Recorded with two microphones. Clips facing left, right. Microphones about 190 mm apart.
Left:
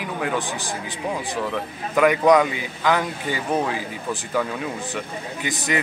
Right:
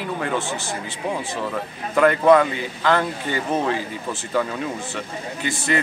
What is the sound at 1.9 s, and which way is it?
Speech, 10° left (ahead or behind).